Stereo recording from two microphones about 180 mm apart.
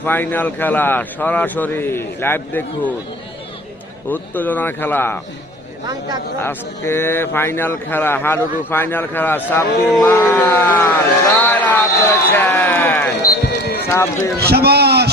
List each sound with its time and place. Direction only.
0.0 s speech: 10° left (ahead or behind)
4.1 s speech: 10° left (ahead or behind)
6.4 s speech: 15° left (ahead or behind)
13.2 s basketball bounce: 60° left (ahead or behind)
14.3 s a sound: 60° right (ahead or behind)